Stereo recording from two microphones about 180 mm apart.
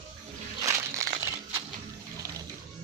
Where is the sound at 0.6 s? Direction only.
20° right (ahead or behind).